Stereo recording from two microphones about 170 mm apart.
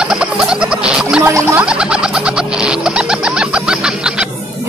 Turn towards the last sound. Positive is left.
turn(degrees=-5)  # may be behind; listen again after turning